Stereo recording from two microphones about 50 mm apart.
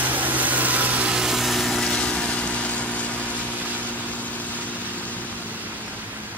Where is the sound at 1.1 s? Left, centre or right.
Centre.